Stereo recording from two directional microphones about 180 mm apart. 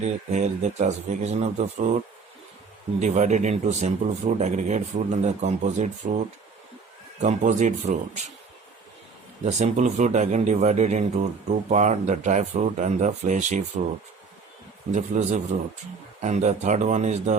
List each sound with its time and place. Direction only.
0.0 s speech: 40° right (ahead or behind)
3.0 s speech: 40° right (ahead or behind)
7.2 s speech: 45° right (ahead or behind)
9.4 s speech: 40° right (ahead or behind)
14.9 s speech: 40° right (ahead or behind)